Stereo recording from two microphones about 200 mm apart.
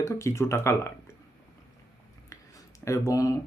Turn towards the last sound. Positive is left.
turn(degrees=15)  # may be behind; listen again after turning